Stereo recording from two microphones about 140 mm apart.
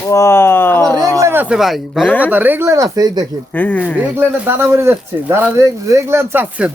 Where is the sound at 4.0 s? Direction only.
15° right (ahead or behind).